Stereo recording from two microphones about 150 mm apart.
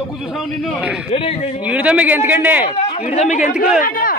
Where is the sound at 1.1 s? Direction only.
40° left (ahead or behind).